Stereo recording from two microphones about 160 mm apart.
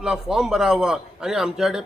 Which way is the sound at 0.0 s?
5° right (ahead or behind).